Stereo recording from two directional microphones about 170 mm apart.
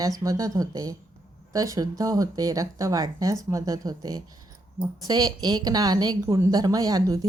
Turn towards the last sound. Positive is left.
turn(degrees=-20)  # may be behind; listen again after turning